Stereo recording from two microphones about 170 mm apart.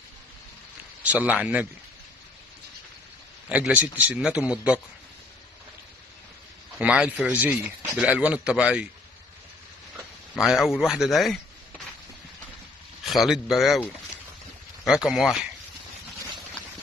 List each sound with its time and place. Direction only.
1.0 s a man's voice: 10° right (ahead or behind)
3.4 s a man's voice: 10° right (ahead or behind)
6.8 s a man's voice: 5° right (ahead or behind)
10.3 s a man's voice: centre (ahead or behind)
13.0 s a man's voice: centre (ahead or behind)